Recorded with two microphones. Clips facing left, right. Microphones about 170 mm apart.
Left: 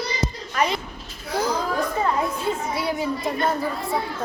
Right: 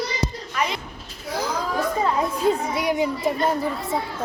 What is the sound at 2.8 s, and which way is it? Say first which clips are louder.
A child's voice: right 2 dB; 15° right (ahead or behind).